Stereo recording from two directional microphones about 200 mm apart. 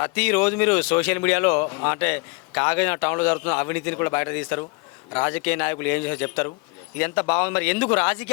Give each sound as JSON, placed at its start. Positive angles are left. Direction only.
{"t": 0.0, "sound": "speech", "side_deg": 10}